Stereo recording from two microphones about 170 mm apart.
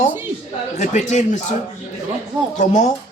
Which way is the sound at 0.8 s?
45° left (ahead or behind).